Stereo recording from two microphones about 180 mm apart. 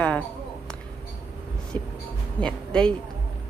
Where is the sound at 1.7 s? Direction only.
30° right (ahead or behind).